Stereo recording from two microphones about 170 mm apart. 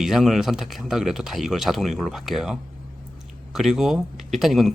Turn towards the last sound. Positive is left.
turn(degrees=0)  # may be behind; listen again after turning